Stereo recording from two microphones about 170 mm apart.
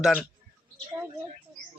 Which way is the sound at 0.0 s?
5° left (ahead or behind).